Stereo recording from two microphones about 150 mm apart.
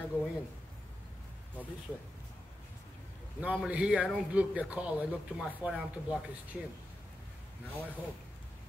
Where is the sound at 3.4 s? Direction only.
10° right (ahead or behind).